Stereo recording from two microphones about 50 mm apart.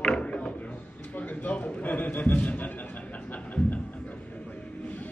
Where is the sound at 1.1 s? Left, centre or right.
Left.